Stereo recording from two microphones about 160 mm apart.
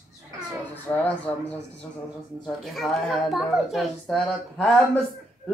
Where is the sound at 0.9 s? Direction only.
20° left (ahead or behind).